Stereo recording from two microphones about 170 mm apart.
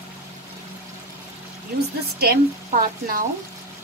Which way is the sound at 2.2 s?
60° right (ahead or behind).